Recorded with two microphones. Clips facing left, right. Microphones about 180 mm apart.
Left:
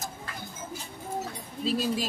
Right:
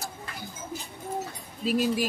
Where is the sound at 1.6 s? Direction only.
10° right (ahead or behind).